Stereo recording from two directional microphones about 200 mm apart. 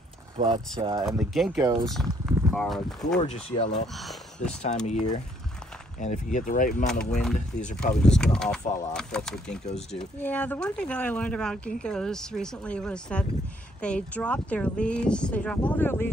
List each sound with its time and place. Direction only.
0.4 s speech: 35° right (ahead or behind)
0.7 s speech: 20° right (ahead or behind)
1.0 s speech: centre (ahead or behind)
1.6 s speech: 20° right (ahead or behind)
1.9 s speech: centre (ahead or behind)
3.3 s speech: 30° left (ahead or behind)
3.9 s speech: centre (ahead or behind)
4.8 s speech: 35° left (ahead or behind)
6.9 s speech: 5° left (ahead or behind)